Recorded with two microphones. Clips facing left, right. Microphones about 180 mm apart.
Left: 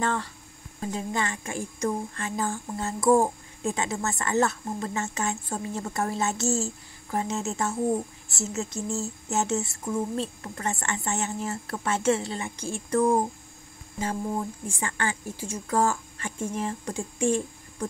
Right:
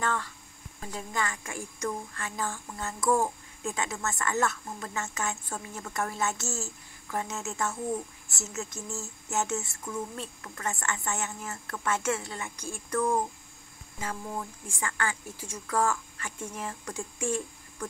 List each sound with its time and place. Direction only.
0.0 s a woman's voice: 35° left (ahead or behind)
14.8 s a woman's voice: 25° left (ahead or behind)